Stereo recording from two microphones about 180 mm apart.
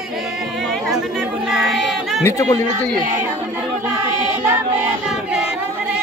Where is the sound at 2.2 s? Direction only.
20° left (ahead or behind).